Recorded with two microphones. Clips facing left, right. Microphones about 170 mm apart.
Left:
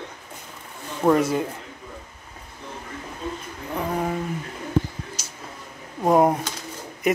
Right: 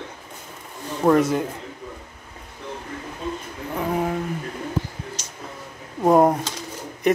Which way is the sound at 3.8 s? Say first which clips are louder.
Right 2 dB; centre (ahead or behind).